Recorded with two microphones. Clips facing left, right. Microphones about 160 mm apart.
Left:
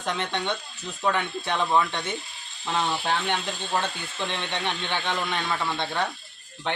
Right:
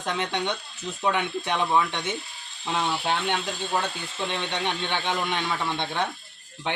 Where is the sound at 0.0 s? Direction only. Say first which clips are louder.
Right 1 dB; 15° right (ahead or behind).